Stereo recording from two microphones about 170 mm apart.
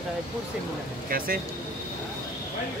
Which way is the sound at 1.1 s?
60° right (ahead or behind).